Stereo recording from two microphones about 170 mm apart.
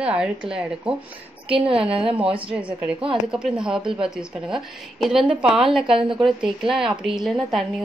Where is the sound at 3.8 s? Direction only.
30° right (ahead or behind).